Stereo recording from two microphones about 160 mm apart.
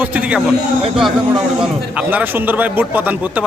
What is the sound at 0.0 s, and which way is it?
Speech, 10° right (ahead or behind).